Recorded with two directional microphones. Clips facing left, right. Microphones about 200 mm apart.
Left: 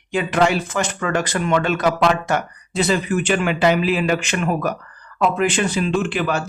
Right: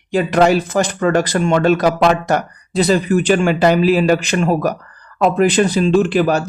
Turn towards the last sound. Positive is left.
turn(degrees=-40)  # may be behind; listen again after turning